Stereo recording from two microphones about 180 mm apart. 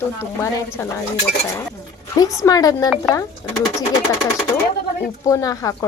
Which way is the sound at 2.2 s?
20° left (ahead or behind).